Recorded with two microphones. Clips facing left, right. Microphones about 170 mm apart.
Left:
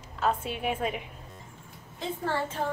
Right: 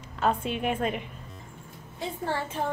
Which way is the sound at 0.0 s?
Centre (ahead or behind).